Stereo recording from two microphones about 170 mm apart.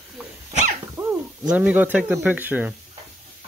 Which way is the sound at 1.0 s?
20° right (ahead or behind).